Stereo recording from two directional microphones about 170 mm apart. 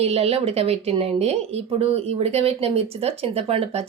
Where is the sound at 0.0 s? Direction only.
35° right (ahead or behind).